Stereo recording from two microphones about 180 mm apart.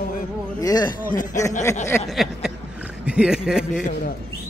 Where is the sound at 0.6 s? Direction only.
20° left (ahead or behind).